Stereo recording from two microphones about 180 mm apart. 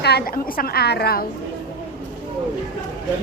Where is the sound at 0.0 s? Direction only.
65° left (ahead or behind).